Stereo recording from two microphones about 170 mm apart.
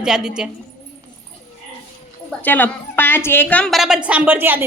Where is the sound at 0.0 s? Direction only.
5° right (ahead or behind).